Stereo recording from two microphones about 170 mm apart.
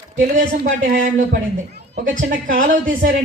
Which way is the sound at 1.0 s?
50° right (ahead or behind).